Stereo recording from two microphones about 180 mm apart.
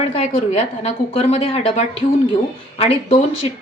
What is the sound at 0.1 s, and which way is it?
A woman's voice, 35° left (ahead or behind).